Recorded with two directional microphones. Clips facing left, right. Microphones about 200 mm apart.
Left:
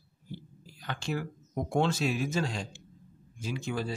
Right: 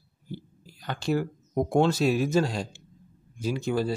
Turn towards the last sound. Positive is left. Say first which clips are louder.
# right 7 dB
turn(degrees=-40)  # may be behind; listen again after turning